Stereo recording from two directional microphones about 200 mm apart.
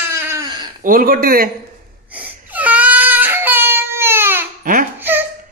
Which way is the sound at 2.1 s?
10° right (ahead or behind).